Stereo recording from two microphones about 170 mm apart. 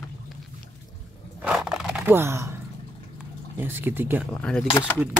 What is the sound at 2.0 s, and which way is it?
Speech, 15° right (ahead or behind).